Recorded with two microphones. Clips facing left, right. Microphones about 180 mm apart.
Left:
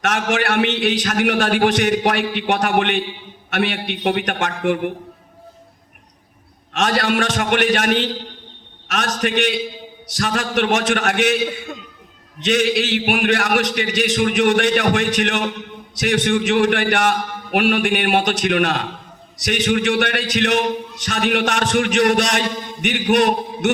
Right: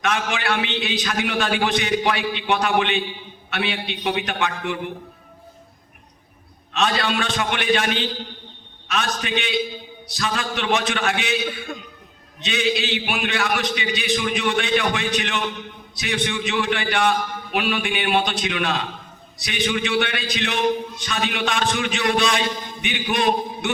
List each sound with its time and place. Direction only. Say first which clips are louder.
0.1 s a man's voice: left 5 dB; 55° left (ahead or behind)
6.7 s a man's voice: left 4 dB; 50° left (ahead or behind)
11.5 s a man's voice: left 1 dB; 25° left (ahead or behind)
12.5 s a man's voice: left 5 dB; 55° left (ahead or behind)